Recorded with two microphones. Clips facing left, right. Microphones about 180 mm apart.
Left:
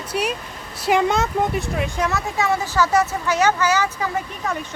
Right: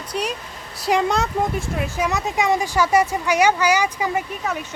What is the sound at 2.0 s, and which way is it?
Speech, 15° right (ahead or behind).